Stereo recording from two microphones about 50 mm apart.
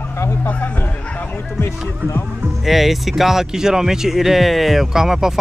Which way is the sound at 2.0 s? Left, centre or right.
Right.